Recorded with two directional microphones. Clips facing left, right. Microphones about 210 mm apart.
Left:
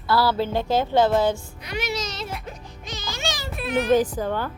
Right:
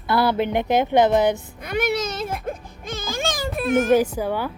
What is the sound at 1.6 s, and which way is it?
Music, 55° right (ahead or behind).